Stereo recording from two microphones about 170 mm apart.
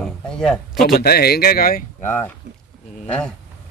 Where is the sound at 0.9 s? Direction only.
65° left (ahead or behind).